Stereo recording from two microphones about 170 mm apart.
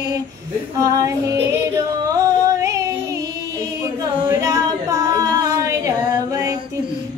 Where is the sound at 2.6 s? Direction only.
20° right (ahead or behind).